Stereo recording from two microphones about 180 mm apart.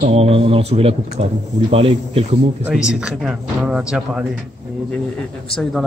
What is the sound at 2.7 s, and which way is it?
A man's voice, 5° right (ahead or behind).